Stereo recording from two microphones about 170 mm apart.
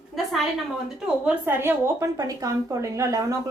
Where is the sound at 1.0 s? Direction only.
10° right (ahead or behind).